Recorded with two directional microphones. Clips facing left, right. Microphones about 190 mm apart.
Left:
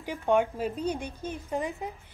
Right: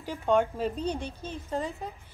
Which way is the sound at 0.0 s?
15° left (ahead or behind).